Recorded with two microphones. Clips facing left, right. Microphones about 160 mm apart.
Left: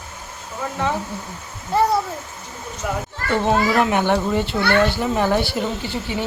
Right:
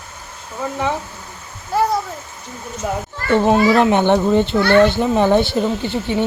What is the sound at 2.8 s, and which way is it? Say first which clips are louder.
Speech: right 4 dB; 30° right (ahead or behind).